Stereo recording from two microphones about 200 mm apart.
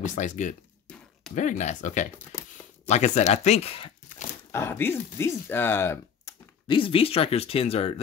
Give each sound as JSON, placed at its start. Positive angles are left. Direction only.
{"t": 0.0, "sound": "speech", "side_deg": 40}
{"t": 0.8, "sound": "a sound", "side_deg": 5}
{"t": 1.3, "sound": "speech", "side_deg": 40}
{"t": 4.5, "sound": "speech", "side_deg": 15}
{"t": 6.7, "sound": "speech", "side_deg": 25}